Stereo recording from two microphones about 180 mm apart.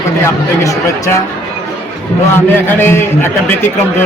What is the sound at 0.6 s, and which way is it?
Speech, 15° left (ahead or behind).